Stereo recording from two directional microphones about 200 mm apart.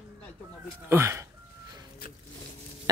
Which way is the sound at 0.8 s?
15° right (ahead or behind).